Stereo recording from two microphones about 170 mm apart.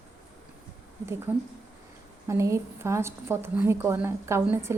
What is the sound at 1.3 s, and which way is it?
A woman's voice, 10° right (ahead or behind).